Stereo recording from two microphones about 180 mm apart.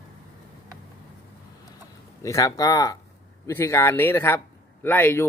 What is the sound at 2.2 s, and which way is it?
Speech, 15° left (ahead or behind).